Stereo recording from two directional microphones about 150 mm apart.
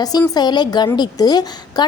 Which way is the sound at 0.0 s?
25° left (ahead or behind).